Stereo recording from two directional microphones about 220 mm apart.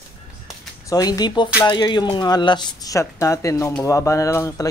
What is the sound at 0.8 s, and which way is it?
Speech, 15° left (ahead or behind).